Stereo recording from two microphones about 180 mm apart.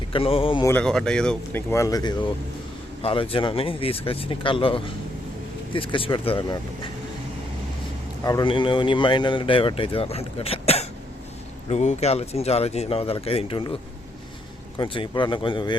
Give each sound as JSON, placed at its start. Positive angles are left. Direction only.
{"t": 0.1, "sound": "speech", "side_deg": 30}
{"t": 0.6, "sound": "speech", "side_deg": 10}
{"t": 1.7, "sound": "a man's voice", "side_deg": 20}
{"t": 8.2, "sound": "a man's voice", "side_deg": 20}
{"t": 14.8, "sound": "a man's voice", "side_deg": 25}